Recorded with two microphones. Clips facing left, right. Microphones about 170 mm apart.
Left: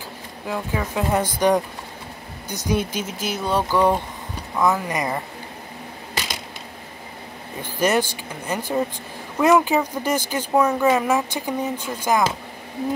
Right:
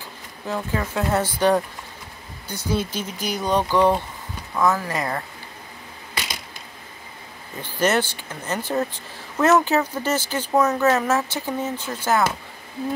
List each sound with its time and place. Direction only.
0.5 s speech: 10° left (ahead or behind)
3.3 s a sound: 5° left (ahead or behind)
4.6 s speech: 15° left (ahead or behind)
7.6 s speech: 10° left (ahead or behind)